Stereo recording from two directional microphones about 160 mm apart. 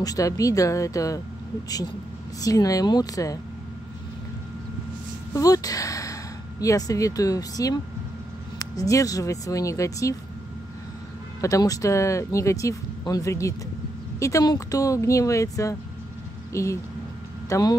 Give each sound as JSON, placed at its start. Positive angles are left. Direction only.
{"t": 0.0, "sound": "speech", "side_deg": 20}
{"t": 2.4, "sound": "speech", "side_deg": 20}
{"t": 5.3, "sound": "a sound", "side_deg": 20}
{"t": 6.6, "sound": "speech", "side_deg": 20}
{"t": 11.4, "sound": "speech", "side_deg": 20}